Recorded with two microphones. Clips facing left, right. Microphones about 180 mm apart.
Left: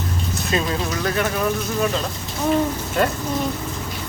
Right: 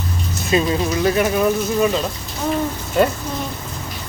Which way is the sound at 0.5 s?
10° right (ahead or behind).